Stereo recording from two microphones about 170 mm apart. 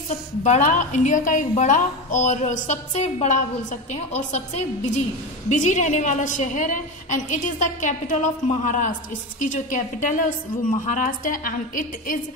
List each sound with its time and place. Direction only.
0.4 s a woman's voice: 45° left (ahead or behind)